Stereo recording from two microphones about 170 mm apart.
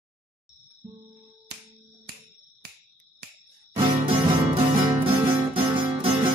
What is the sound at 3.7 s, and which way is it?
Music, 30° right (ahead or behind).